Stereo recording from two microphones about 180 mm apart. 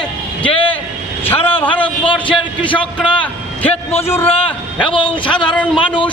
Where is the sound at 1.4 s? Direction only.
30° left (ahead or behind).